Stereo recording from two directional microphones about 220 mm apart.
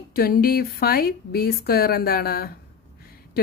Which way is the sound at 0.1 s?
40° left (ahead or behind).